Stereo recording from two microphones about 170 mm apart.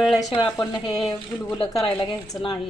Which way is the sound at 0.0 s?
Centre (ahead or behind).